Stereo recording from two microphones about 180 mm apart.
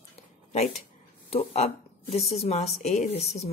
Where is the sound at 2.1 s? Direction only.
35° left (ahead or behind).